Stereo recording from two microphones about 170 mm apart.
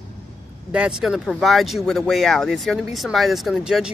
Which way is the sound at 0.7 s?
5° right (ahead or behind).